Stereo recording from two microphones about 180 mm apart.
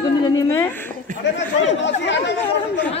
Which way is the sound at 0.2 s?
15° left (ahead or behind).